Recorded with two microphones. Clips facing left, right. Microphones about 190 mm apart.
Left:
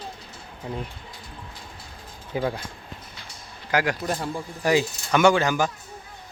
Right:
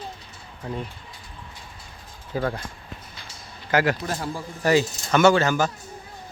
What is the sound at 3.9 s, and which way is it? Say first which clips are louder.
Speech: left 1 dB; centre (ahead or behind).